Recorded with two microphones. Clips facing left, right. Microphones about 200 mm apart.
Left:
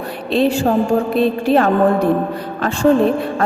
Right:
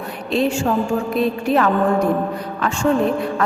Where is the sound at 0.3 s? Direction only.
35° left (ahead or behind).